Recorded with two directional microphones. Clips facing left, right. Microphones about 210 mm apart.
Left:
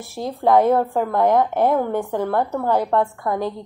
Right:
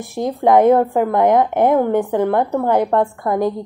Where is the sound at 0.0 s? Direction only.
15° right (ahead or behind).